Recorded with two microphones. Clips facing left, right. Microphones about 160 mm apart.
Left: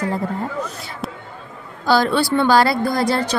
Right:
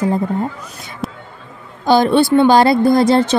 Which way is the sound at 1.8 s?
20° right (ahead or behind).